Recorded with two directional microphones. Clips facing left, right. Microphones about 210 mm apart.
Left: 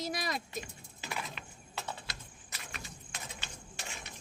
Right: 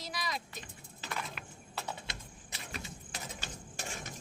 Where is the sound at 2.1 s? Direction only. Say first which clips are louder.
Right 2 dB; 25° right (ahead or behind).